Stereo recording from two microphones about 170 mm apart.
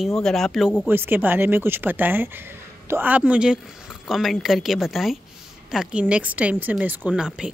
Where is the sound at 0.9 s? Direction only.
10° right (ahead or behind).